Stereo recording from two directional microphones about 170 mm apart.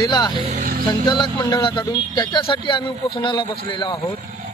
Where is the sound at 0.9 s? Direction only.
25° left (ahead or behind).